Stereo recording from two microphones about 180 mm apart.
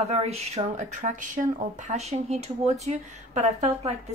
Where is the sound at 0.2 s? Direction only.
35° right (ahead or behind).